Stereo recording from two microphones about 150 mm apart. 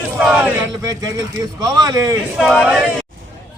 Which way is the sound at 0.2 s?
10° right (ahead or behind).